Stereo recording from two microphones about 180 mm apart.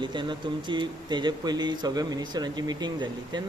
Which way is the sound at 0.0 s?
25° right (ahead or behind).